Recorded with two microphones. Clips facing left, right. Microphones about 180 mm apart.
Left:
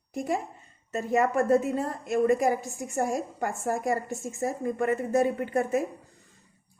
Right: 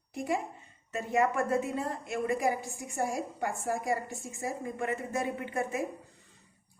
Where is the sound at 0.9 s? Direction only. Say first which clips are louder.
Left 3 dB; 40° left (ahead or behind).